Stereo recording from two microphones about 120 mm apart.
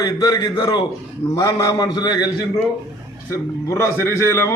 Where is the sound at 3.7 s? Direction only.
25° left (ahead or behind).